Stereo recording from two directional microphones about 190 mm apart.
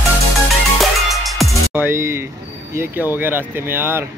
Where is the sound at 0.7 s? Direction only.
Centre (ahead or behind).